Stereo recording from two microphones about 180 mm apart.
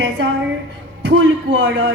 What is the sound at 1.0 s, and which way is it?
Speech, 90° right.